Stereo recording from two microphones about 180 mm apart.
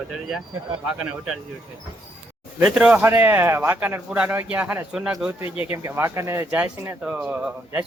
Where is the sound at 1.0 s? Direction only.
Centre (ahead or behind).